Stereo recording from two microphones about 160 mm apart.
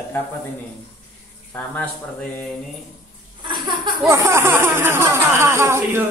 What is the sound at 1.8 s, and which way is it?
Speech, 10° left (ahead or behind).